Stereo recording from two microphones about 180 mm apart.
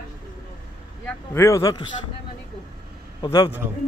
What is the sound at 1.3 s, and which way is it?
Speech, 15° left (ahead or behind).